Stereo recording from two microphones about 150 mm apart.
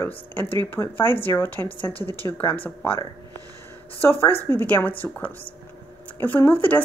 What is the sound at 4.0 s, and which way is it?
Speech, 15° left (ahead or behind).